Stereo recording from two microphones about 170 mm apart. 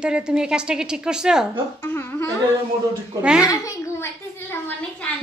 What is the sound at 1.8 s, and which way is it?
Speech, 15° left (ahead or behind).